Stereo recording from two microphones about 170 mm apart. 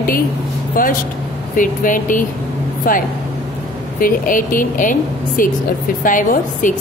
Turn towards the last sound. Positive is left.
turn(degrees=50)  # may be behind; listen again after turning